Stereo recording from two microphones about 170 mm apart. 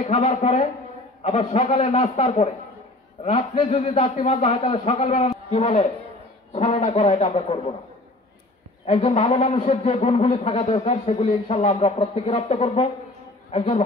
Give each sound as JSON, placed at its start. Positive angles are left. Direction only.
{"t": 0.0, "sound": "a man's voice", "side_deg": 35}
{"t": 8.8, "sound": "a man's voice", "side_deg": 35}